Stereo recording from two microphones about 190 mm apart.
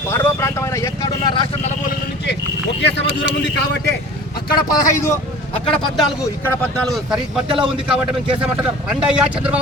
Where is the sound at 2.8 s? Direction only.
65° left (ahead or behind).